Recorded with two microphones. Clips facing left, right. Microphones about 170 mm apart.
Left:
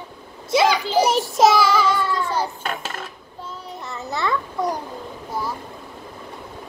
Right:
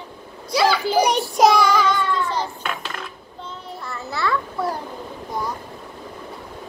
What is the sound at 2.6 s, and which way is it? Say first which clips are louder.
Dishes: left 1 dB; 40° left (ahead or behind).